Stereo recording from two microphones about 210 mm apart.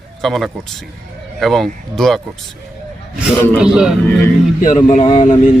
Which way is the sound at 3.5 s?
5° right (ahead or behind).